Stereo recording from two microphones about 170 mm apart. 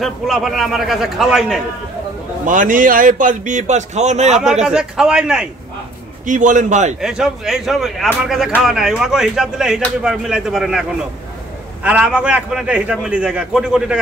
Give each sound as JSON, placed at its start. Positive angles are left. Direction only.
{"t": 0.0, "sound": "a man's voice", "side_deg": 0}
{"t": 2.4, "sound": "speech", "side_deg": -50}
{"t": 4.6, "sound": "a man's voice", "side_deg": -5}
{"t": 6.2, "sound": "speech", "side_deg": -50}
{"t": 7.0, "sound": "a man's voice", "side_deg": -5}